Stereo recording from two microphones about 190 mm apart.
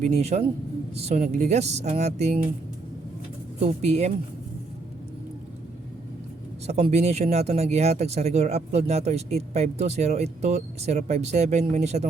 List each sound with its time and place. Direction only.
0.0 s speech: 35° right (ahead or behind)
3.6 s speech: 35° right (ahead or behind)
6.7 s speech: 35° right (ahead or behind)